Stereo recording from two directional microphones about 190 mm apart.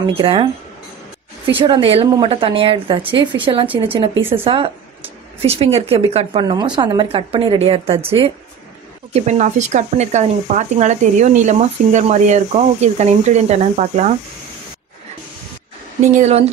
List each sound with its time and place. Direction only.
0.0 s a woman's voice: 30° right (ahead or behind)
1.5 s a woman's voice: 25° right (ahead or behind)
16.0 s speech: 35° right (ahead or behind)